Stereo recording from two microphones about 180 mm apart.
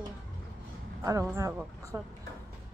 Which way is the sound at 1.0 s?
20° right (ahead or behind).